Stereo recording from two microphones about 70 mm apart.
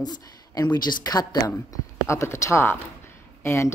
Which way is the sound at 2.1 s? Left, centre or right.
Left.